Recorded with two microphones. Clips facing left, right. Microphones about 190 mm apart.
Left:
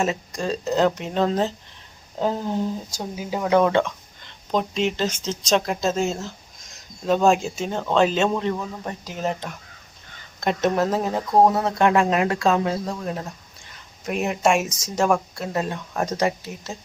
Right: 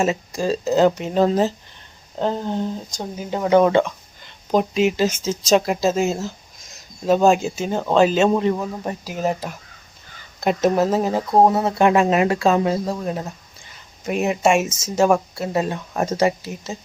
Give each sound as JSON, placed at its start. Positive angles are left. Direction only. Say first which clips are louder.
{"t": 0.0, "sound": "speech", "louder": "right 4 dB", "side_deg": -5}
{"t": 11.3, "sound": "speech", "louder": "right 1 dB", "side_deg": -25}
{"t": 11.5, "sound": "speech", "louder": "right 3 dB", "side_deg": -5}